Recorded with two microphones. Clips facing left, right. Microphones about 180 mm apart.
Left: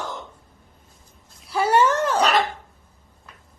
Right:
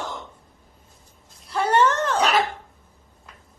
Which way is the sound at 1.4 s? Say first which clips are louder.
Left 1 dB; 5° left (ahead or behind).